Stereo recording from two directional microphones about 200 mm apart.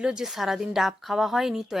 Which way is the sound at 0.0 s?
5° right (ahead or behind).